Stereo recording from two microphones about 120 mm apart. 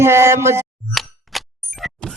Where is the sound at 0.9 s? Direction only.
Centre (ahead or behind).